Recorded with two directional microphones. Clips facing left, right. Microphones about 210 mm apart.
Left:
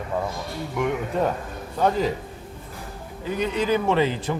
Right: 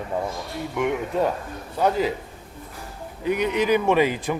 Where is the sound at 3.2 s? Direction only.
15° right (ahead or behind).